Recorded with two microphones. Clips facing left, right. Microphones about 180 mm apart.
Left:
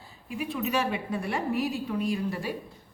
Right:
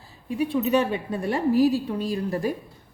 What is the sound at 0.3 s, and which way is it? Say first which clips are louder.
A woman's voice: right 8 dB; 35° right (ahead or behind).